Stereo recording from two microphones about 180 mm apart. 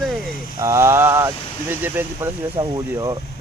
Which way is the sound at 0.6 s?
15° right (ahead or behind).